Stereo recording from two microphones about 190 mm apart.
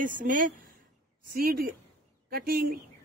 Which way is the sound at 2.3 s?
50° right (ahead or behind).